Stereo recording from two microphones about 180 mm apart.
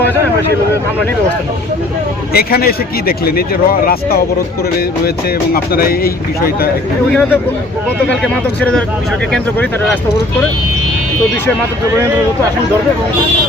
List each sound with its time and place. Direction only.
2.3 s speech: 60° left (ahead or behind)
5.7 s speech: 55° left (ahead or behind)
8.2 s speech: 5° left (ahead or behind)